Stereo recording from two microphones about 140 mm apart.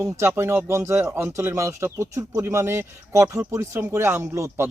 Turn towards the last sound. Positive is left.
turn(degrees=-20)  # may be behind; listen again after turning